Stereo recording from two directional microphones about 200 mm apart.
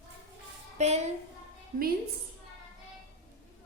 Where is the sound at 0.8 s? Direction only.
35° right (ahead or behind).